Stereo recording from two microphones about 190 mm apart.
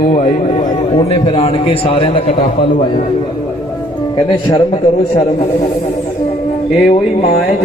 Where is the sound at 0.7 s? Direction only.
30° left (ahead or behind).